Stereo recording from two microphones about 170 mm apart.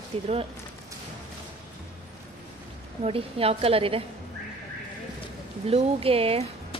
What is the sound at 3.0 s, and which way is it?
A woman's voice, 35° right (ahead or behind).